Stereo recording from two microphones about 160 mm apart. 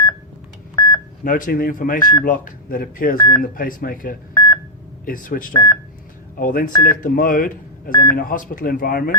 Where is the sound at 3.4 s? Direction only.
60° left (ahead or behind).